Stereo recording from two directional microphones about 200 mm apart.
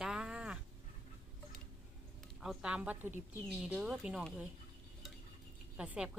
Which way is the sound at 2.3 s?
5° right (ahead or behind).